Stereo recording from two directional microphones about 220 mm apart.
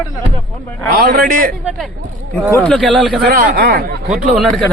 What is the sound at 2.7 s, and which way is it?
Speech, centre (ahead or behind).